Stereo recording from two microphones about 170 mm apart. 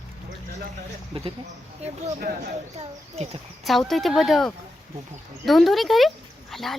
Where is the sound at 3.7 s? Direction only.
Centre (ahead or behind).